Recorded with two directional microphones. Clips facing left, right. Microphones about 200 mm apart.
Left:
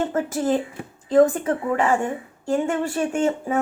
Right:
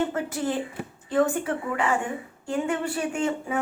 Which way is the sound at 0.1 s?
45° left (ahead or behind).